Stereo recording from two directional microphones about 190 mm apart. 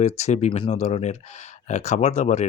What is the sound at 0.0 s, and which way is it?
Speech, 35° left (ahead or behind).